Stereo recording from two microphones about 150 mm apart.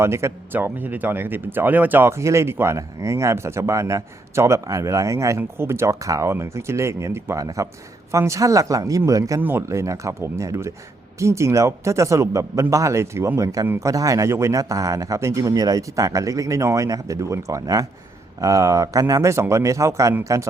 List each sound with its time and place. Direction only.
0.0 s speech: 20° right (ahead or behind)